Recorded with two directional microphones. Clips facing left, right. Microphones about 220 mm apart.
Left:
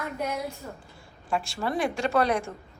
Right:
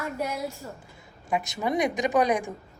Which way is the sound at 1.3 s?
15° right (ahead or behind).